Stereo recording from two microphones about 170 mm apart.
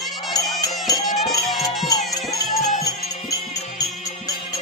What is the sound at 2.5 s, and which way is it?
Music, 40° left (ahead or behind).